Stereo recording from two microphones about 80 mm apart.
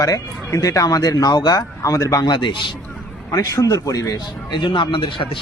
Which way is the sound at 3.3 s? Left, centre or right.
Left.